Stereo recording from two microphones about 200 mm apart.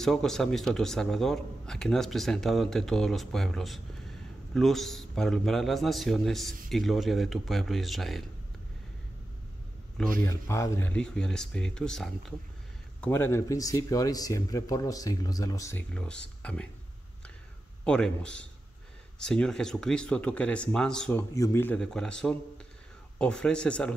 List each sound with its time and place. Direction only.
0.0 s a man's voice: centre (ahead or behind)
10.2 s a man's voice: 15° left (ahead or behind)
15.9 s a man's voice: 5° left (ahead or behind)
17.8 s a man's voice: 5° left (ahead or behind)